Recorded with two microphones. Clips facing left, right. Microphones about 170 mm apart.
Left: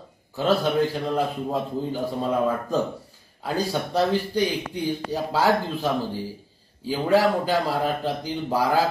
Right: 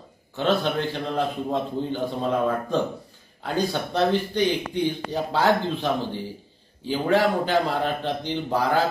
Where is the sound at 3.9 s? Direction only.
5° left (ahead or behind).